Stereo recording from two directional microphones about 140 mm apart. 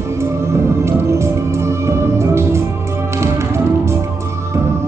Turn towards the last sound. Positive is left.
turn(degrees=-20)  # may be behind; listen again after turning